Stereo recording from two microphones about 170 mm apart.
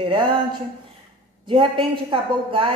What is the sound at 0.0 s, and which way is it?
Speech, 30° right (ahead or behind).